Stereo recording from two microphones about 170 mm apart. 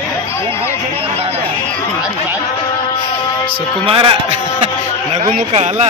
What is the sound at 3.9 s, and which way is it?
Speech, 30° right (ahead or behind).